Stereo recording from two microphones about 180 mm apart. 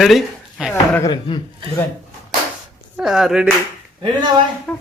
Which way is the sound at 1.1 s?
25° left (ahead or behind).